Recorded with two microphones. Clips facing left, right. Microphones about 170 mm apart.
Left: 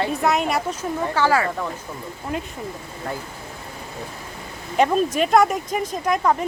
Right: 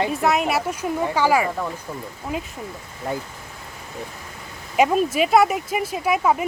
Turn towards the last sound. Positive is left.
turn(degrees=-5)  # may be behind; listen again after turning